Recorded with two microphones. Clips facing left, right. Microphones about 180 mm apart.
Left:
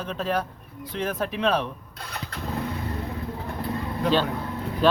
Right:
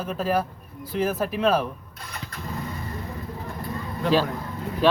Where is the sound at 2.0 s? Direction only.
60° left (ahead or behind).